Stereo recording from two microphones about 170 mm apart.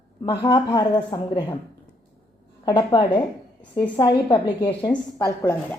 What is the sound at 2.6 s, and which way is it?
A woman's voice, 25° left (ahead or behind).